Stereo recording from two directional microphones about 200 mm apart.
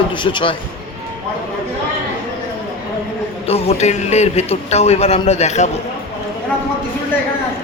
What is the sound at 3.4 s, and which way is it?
A man's voice, 30° left (ahead or behind).